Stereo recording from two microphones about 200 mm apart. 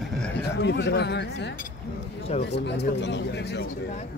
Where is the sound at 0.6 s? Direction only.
60° left (ahead or behind).